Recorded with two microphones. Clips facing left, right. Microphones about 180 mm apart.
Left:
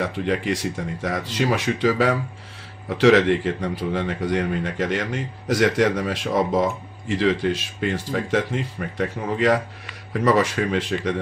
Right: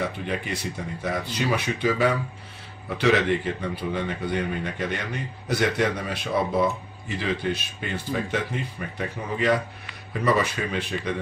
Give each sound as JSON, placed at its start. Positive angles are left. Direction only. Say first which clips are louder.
{"t": 0.0, "sound": "speech", "louder": "left 5 dB", "side_deg": 85}
{"t": 3.0, "sound": "a man's voice", "louder": "left 6 dB", "side_deg": 80}
{"t": 9.2, "sound": "speech", "louder": "left 6 dB", "side_deg": 65}
{"t": 10.1, "sound": "speech", "louder": "left 4 dB", "side_deg": 90}